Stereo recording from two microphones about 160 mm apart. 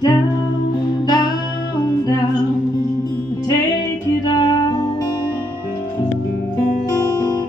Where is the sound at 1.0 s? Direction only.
25° left (ahead or behind).